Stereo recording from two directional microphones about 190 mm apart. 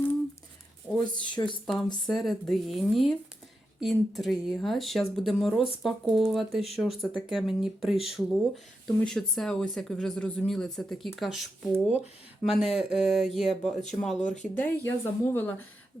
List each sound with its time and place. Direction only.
0.9 s a sound: centre (ahead or behind)
1.3 s speech: 25° left (ahead or behind)
1.6 s speech: 5° left (ahead or behind)
14.2 s speech: 40° left (ahead or behind)
14.5 s speech: 10° left (ahead or behind)